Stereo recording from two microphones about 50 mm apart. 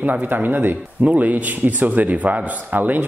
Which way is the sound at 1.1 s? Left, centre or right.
Right.